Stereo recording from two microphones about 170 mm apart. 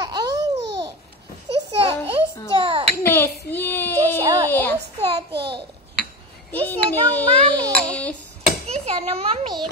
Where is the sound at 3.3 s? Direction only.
75° left (ahead or behind).